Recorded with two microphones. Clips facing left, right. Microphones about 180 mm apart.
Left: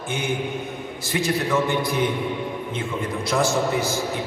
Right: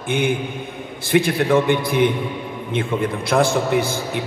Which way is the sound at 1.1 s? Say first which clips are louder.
Right 6 dB; 55° right (ahead or behind).